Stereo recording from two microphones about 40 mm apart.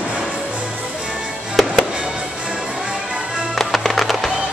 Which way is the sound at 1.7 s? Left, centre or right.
Right.